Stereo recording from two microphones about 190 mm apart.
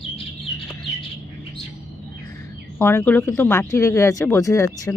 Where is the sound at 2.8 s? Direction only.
10° left (ahead or behind).